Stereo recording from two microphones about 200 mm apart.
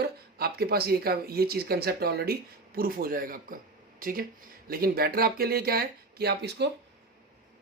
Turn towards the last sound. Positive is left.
turn(degrees=-55)  # may be behind; listen again after turning